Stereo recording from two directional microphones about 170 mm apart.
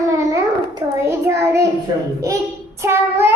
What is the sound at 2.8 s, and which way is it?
Speech, 15° right (ahead or behind).